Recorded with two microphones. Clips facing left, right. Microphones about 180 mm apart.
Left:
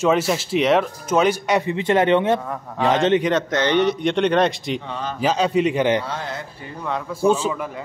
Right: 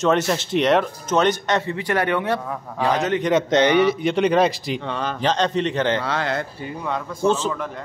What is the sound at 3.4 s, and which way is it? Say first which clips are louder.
Speech: right 4 dB; 20° right (ahead or behind).